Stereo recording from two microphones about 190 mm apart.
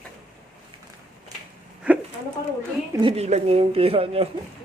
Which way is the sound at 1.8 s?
5° right (ahead or behind).